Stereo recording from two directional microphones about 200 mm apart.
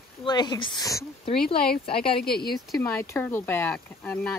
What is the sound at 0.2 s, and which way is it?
Speech, 20° left (ahead or behind).